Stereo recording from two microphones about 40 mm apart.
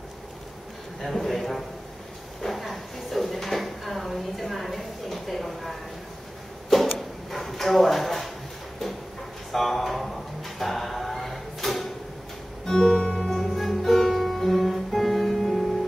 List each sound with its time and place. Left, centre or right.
1.0 s a man's voice: centre
2.4 s drawer open or close: centre
7.2 s drawer open or close: centre
9.5 s a sound: centre
12.6 s music: centre
13.3 s music: centre